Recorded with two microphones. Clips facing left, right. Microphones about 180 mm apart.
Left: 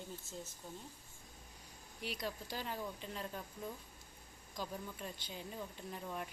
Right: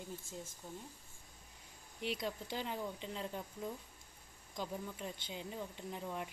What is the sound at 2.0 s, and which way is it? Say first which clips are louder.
Speech: right 3 dB; 20° right (ahead or behind).